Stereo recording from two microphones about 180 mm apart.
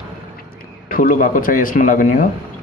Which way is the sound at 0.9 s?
50° left (ahead or behind).